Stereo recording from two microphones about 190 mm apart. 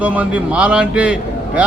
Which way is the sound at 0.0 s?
5° right (ahead or behind).